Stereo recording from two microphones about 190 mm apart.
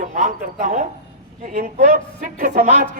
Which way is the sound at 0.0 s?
45° right (ahead or behind).